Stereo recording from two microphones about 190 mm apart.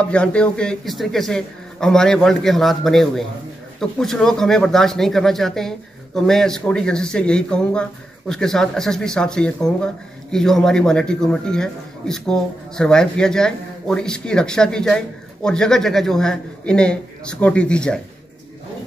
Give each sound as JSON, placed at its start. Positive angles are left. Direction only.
{"t": 0.0, "sound": "a man's voice", "side_deg": 5}